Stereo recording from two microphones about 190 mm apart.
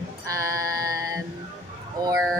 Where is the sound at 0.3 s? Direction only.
15° right (ahead or behind).